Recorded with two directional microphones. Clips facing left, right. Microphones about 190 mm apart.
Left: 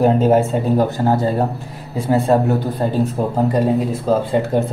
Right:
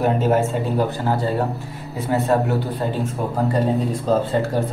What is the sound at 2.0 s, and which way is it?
Speech, 30° left (ahead or behind).